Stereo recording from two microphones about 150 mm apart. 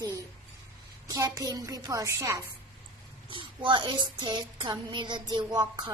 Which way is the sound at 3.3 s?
35° right (ahead or behind).